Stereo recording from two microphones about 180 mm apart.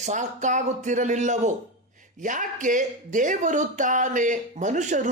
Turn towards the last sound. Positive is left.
turn(degrees=-45)  # may be behind; listen again after turning